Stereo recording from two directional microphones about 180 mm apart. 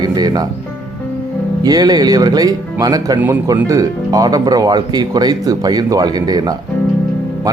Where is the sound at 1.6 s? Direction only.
20° right (ahead or behind).